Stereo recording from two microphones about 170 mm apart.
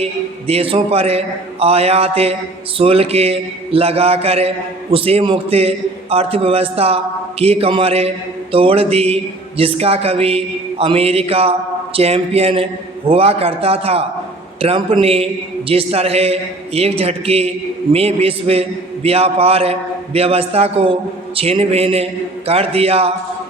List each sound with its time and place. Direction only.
0.0 s a man's voice: 35° right (ahead or behind)